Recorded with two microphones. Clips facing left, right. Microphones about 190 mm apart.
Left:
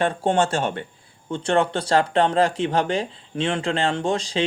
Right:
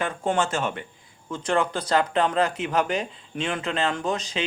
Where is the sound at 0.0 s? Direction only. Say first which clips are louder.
Left 4 dB; 30° left (ahead or behind).